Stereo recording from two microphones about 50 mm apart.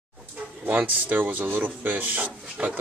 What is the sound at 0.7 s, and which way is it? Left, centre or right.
Speech, right.